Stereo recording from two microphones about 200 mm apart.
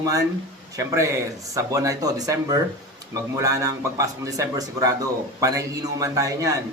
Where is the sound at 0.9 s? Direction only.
15° right (ahead or behind).